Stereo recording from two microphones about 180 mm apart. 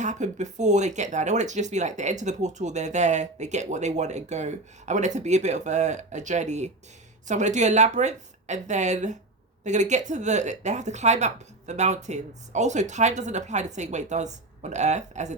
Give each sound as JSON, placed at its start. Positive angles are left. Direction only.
{"t": 0.0, "sound": "speech", "side_deg": -40}